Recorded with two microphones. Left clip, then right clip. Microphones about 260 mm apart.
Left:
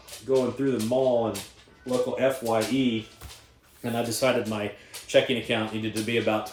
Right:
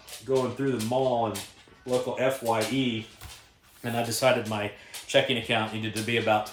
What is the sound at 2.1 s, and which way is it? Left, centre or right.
Speech, centre.